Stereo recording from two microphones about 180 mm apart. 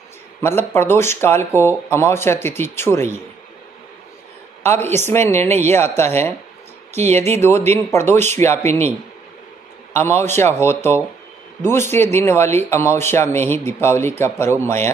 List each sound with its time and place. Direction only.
0.4 s a man's voice: 15° left (ahead or behind)
4.9 s a man's voice: 15° left (ahead or behind)
6.9 s speech: 40° right (ahead or behind)
7.4 s a man's voice: 10° left (ahead or behind)
9.9 s a man's voice: 15° left (ahead or behind)